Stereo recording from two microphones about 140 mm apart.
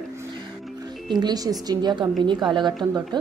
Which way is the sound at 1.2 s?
25° right (ahead or behind).